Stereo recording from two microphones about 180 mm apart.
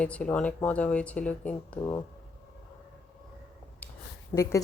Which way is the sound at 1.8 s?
20° left (ahead or behind).